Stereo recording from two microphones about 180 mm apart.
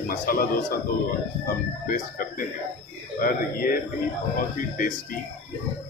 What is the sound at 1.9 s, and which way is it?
Speech, 50° left (ahead or behind).